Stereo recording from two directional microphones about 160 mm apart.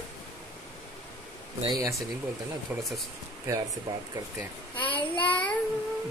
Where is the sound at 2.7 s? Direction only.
10° right (ahead or behind).